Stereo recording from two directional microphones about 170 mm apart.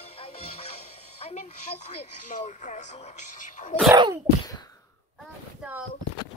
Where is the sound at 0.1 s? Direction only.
35° left (ahead or behind).